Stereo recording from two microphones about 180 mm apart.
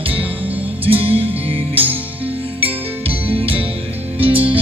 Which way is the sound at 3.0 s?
30° right (ahead or behind).